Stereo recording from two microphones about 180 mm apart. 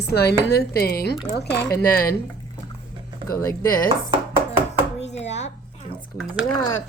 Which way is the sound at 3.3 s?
15° left (ahead or behind).